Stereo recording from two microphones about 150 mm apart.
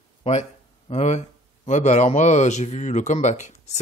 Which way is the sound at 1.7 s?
50° left (ahead or behind).